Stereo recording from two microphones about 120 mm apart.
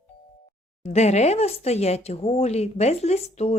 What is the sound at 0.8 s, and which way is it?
A woman's voice, 65° left (ahead or behind).